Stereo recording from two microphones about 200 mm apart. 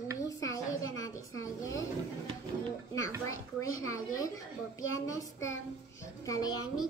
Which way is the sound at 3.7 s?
90° left.